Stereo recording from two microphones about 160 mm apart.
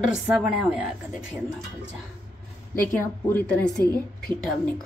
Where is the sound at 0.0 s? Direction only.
5° right (ahead or behind).